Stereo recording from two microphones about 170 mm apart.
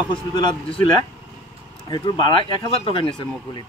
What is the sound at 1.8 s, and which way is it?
Speech, 25° left (ahead or behind).